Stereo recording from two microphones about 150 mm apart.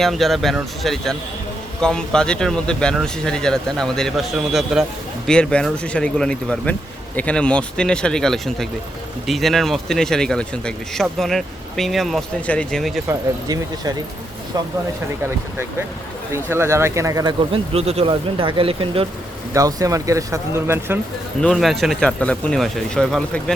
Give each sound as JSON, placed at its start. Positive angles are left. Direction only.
{"t": 0.0, "sound": "speech", "side_deg": 0}
{"t": 13.1, "sound": "speech", "side_deg": -25}
{"t": 16.3, "sound": "speech", "side_deg": -15}
{"t": 17.5, "sound": "speech", "side_deg": -40}
{"t": 19.5, "sound": "speech", "side_deg": -20}
{"t": 21.4, "sound": "speech", "side_deg": 0}